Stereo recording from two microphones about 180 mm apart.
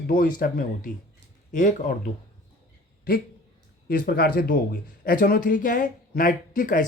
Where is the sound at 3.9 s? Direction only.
55° left (ahead or behind).